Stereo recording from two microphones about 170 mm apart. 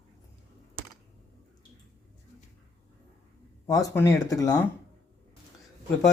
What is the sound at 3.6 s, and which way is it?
Speech, 20° left (ahead or behind).